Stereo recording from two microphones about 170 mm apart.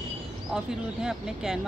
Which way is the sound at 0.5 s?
5° right (ahead or behind).